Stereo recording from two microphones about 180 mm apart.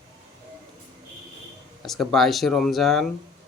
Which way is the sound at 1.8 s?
Centre (ahead or behind).